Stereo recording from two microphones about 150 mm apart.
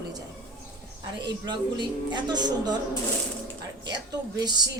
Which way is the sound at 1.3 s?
30° right (ahead or behind).